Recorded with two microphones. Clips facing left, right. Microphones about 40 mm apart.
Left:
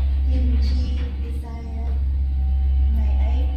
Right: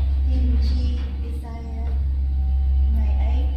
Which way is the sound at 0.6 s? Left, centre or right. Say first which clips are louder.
Even; centre.